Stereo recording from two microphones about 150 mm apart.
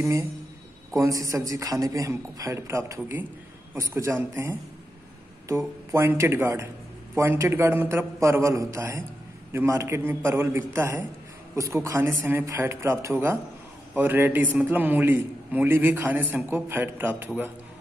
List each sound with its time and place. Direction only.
0.0 s a man's voice: 20° right (ahead or behind)
5.9 s a man's voice: 20° right (ahead or behind)